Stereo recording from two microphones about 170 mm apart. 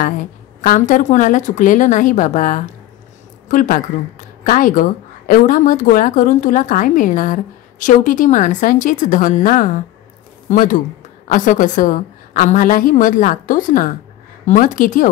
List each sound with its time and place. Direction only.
0.0 s a woman's voice: 55° left (ahead or behind)